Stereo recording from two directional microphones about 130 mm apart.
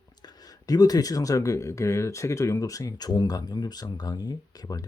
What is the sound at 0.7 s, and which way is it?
Speech, 30° left (ahead or behind).